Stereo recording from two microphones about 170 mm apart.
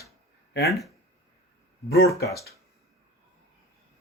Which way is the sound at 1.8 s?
65° left (ahead or behind).